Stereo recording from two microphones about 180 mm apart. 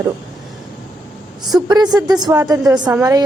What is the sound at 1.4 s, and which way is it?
A woman's voice, 25° right (ahead or behind).